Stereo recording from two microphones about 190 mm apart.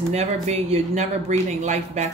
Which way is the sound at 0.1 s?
35° right (ahead or behind).